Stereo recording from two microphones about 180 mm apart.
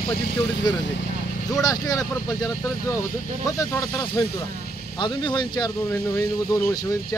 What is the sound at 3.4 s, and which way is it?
Speech, 20° left (ahead or behind).